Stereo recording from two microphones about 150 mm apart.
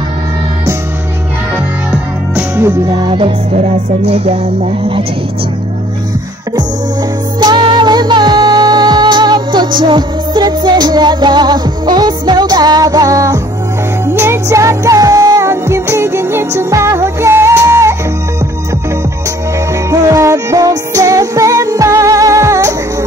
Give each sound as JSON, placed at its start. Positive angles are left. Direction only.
{"t": 2.3, "sound": "music", "side_deg": -15}
{"t": 3.1, "sound": "music", "side_deg": -35}
{"t": 7.3, "sound": "music", "side_deg": -30}
{"t": 19.9, "sound": "music", "side_deg": -20}